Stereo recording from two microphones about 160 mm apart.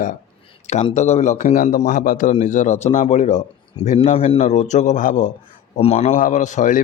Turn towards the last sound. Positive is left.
turn(degrees=50)  # may be behind; listen again after turning